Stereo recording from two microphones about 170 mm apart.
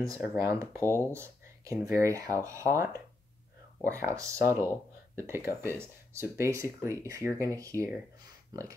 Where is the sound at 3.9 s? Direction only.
15° right (ahead or behind).